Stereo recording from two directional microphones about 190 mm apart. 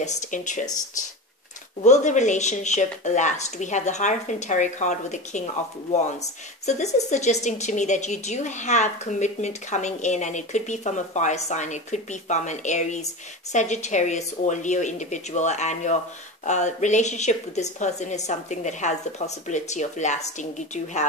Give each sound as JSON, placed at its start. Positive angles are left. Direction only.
{"t": 0.0, "sound": "speech", "side_deg": 40}
{"t": 1.8, "sound": "speech", "side_deg": 40}